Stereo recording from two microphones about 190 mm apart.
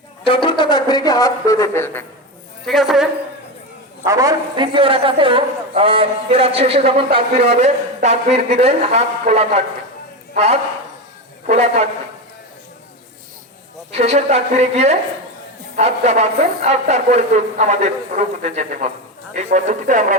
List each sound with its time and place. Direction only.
0.3 s speech: 25° left (ahead or behind)
2.6 s a woman's voice: centre (ahead or behind)
4.0 s a man's voice: 20° right (ahead or behind); by 11.9 s 35° right (ahead or behind)
13.9 s speech: 35° right (ahead or behind)